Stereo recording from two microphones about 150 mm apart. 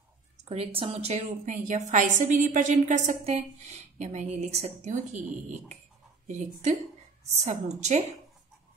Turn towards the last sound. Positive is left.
turn(degrees=-50)  # may be behind; listen again after turning